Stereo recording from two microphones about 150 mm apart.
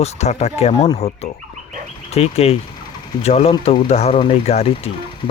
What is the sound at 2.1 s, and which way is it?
Speech, 45° left (ahead or behind).